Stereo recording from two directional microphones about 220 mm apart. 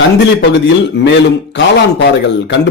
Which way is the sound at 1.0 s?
50° left (ahead or behind).